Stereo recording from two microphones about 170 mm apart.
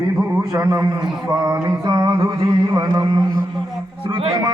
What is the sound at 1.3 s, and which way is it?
Mantra, 15° right (ahead or behind).